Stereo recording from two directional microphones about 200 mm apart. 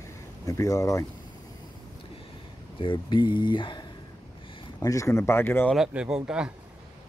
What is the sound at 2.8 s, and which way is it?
Speech, 25° left (ahead or behind).